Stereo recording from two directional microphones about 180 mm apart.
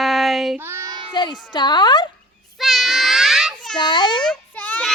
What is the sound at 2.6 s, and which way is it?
Child singing, centre (ahead or behind).